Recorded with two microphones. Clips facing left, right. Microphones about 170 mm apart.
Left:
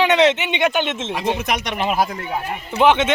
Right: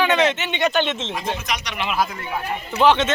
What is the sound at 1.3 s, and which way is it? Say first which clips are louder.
Speech: left 5 dB; 55° left (ahead or behind).